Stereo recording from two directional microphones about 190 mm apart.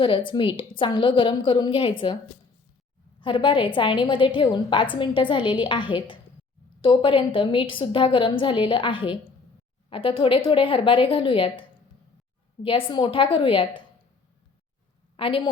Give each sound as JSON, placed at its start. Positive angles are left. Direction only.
{"t": 0.0, "sound": "a woman's voice", "side_deg": 25}
{"t": 3.2, "sound": "a woman's voice", "side_deg": 25}
{"t": 12.6, "sound": "a woman's voice", "side_deg": 25}
{"t": 15.1, "sound": "a woman's voice", "side_deg": 25}